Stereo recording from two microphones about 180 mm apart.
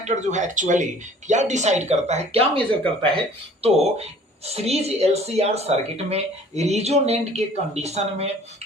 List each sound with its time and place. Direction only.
0.0 s speech: 40° right (ahead or behind)